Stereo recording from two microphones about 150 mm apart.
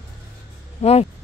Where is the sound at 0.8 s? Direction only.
45° left (ahead or behind).